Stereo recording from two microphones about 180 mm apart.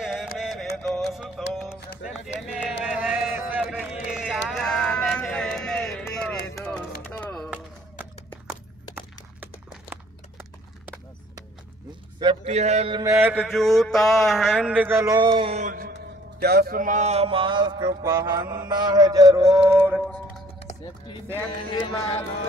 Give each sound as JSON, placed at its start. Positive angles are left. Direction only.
{"t": 0.0, "sound": "music", "side_deg": -5}
{"t": 1.5, "sound": "run", "side_deg": 0}
{"t": 2.4, "sound": "a sound", "side_deg": -5}
{"t": 6.5, "sound": "music", "side_deg": 15}
{"t": 8.9, "sound": "a sound", "side_deg": -10}
{"t": 12.2, "sound": "a sound", "side_deg": -30}
{"t": 12.9, "sound": "mantra", "side_deg": -15}
{"t": 15.5, "sound": "music", "side_deg": -45}
{"t": 16.3, "sound": "music", "side_deg": -60}
{"t": 18.0, "sound": "mantra", "side_deg": -15}
{"t": 20.0, "sound": "music", "side_deg": 5}
{"t": 21.6, "sound": "speech", "side_deg": 25}